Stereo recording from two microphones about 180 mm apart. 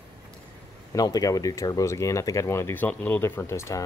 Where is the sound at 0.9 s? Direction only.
20° left (ahead or behind).